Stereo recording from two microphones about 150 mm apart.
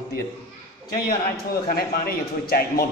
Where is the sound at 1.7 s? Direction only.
80° left.